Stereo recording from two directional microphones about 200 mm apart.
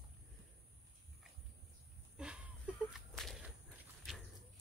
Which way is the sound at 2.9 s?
Centre (ahead or behind).